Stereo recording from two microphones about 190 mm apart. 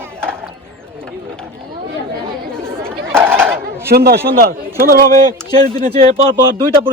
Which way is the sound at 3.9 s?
55° right (ahead or behind).